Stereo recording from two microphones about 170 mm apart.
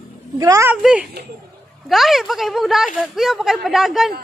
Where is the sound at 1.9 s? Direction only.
Centre (ahead or behind).